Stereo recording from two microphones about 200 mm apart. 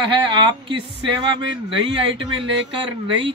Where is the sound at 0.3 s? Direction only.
25° right (ahead or behind).